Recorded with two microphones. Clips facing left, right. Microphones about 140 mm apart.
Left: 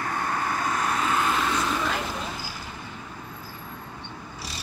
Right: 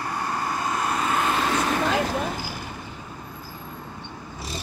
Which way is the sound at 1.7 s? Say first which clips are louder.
Right 5 dB; 70° right (ahead or behind).